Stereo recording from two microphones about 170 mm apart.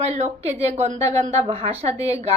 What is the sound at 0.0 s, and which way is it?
A woman's voice, 40° right (ahead or behind).